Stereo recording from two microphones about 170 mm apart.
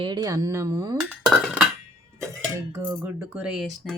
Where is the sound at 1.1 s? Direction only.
Centre (ahead or behind).